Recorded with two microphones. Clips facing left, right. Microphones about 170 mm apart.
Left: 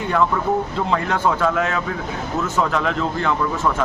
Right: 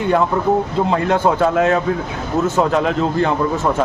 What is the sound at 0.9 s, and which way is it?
Speech, 30° right (ahead or behind).